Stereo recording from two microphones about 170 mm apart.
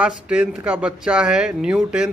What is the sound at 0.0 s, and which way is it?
Speech, 5° right (ahead or behind).